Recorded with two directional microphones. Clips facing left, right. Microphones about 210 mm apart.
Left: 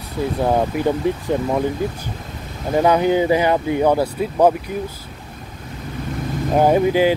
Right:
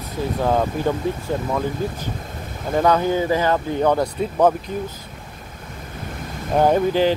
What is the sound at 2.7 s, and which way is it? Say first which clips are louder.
Speech: left 3 dB; 15° left (ahead or behind).